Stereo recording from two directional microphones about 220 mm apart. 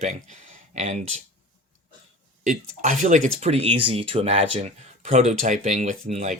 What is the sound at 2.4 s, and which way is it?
Speech, 35° right (ahead or behind).